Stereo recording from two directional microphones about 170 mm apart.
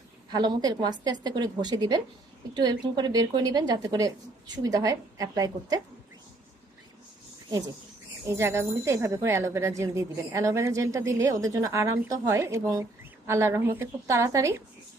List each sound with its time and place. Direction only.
0.3 s a woman's voice: 25° right (ahead or behind)
7.4 s a woman's voice: 20° right (ahead or behind)